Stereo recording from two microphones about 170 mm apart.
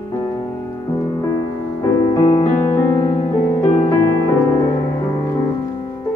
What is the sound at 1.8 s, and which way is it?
Music, 20° left (ahead or behind).